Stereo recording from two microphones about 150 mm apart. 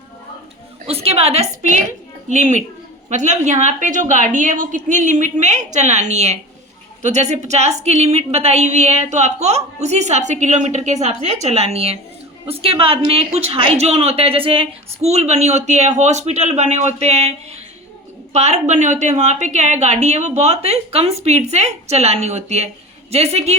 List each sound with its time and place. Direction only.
0.9 s a woman's voice: 40° right (ahead or behind)